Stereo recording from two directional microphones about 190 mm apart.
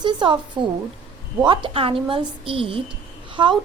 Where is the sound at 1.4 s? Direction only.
25° right (ahead or behind).